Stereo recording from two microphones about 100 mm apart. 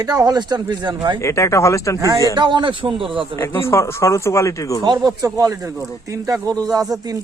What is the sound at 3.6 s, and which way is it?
Speech, 25° left (ahead or behind).